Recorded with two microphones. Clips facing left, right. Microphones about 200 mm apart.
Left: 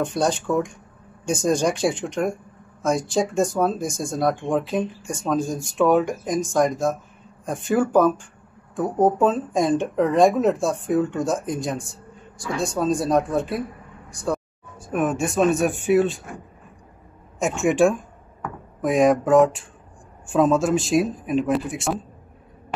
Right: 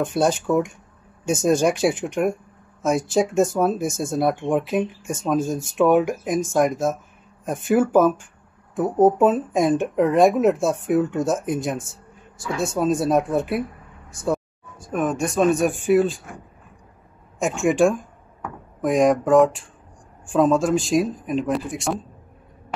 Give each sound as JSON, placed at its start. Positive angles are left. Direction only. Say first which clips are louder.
{"t": 0.0, "sound": "speech", "louder": "right 2 dB", "side_deg": -5}
{"t": 3.8, "sound": "speech", "louder": "right 2 dB", "side_deg": -20}
{"t": 4.1, "sound": "speech", "louder": "right 1 dB", "side_deg": -5}
{"t": 14.9, "sound": "speech", "louder": "even", "side_deg": 5}
{"t": 17.4, "sound": "speech", "louder": "even", "side_deg": 0}